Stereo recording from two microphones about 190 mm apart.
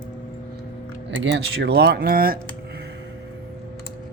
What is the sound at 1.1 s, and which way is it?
Speech, 80° right.